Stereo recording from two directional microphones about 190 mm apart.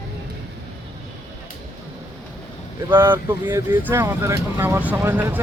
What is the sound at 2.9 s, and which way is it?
Speech, 10° right (ahead or behind).